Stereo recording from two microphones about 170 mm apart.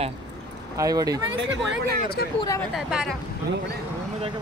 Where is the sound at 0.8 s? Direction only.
20° right (ahead or behind).